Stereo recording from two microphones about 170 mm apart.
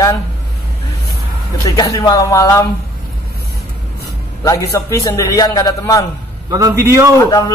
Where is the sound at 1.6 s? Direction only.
20° left (ahead or behind).